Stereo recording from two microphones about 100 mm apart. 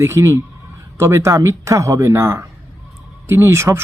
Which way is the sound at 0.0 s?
30° right (ahead or behind).